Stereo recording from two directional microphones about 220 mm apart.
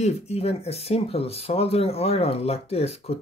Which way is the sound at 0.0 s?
30° left (ahead or behind).